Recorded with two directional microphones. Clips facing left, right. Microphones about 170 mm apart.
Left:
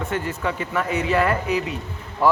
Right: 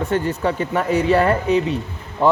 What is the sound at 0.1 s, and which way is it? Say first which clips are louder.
Speech: right 6 dB; 30° right (ahead or behind).